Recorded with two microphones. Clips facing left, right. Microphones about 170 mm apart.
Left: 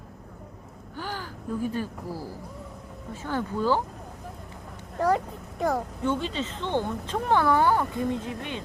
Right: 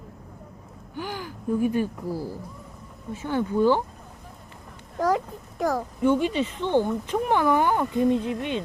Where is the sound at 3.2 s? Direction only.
20° right (ahead or behind).